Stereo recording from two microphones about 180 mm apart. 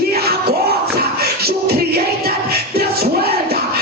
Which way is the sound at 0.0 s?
60° right (ahead or behind).